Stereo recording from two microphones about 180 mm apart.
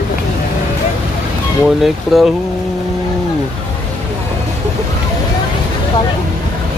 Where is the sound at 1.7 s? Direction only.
Centre (ahead or behind).